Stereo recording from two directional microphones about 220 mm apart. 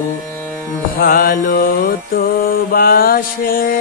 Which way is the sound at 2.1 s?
40° left (ahead or behind).